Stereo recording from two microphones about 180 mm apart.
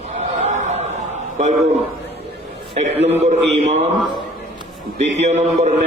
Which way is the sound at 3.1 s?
40° right (ahead or behind).